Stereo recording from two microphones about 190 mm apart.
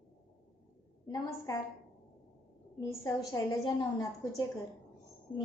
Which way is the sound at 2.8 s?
20° left (ahead or behind).